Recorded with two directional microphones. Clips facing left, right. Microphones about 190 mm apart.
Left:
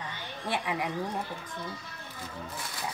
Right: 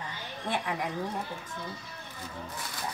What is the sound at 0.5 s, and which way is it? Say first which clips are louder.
Speech: even; 5° left (ahead or behind).